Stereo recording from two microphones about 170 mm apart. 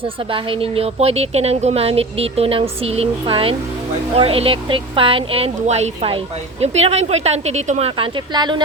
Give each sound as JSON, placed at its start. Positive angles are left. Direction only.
{"t": 0.3, "sound": "a woman's voice", "side_deg": -30}